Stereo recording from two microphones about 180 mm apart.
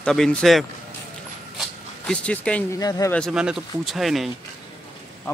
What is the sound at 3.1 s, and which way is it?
Speech, centre (ahead or behind).